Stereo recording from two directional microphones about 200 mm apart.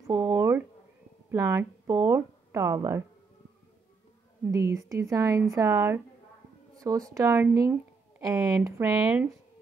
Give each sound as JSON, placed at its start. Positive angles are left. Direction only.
{"t": 0.0, "sound": "a sound", "side_deg": -15}
{"t": 1.3, "sound": "speech", "side_deg": -15}
{"t": 4.5, "sound": "a woman's voice", "side_deg": -15}